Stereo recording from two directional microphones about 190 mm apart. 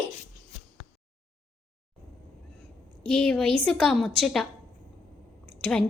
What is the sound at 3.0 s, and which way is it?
A woman's voice, 5° left (ahead or behind).